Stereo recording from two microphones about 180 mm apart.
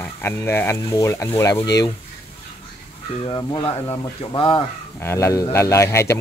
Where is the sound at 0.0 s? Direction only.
15° left (ahead or behind).